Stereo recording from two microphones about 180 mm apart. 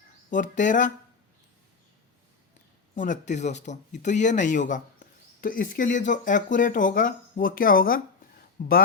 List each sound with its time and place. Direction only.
0.3 s speech: 45° left (ahead or behind)
2.9 s speech: 45° left (ahead or behind)